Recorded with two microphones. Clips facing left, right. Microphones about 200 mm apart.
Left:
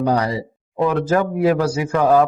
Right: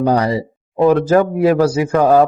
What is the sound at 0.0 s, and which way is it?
A man's voice, 30° right (ahead or behind).